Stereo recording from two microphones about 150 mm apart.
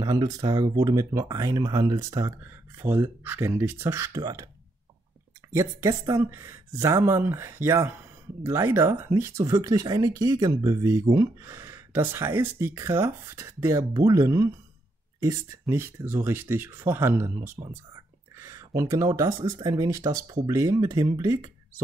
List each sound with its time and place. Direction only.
0.0 s speech: 25° right (ahead or behind)
5.5 s speech: 20° right (ahead or behind)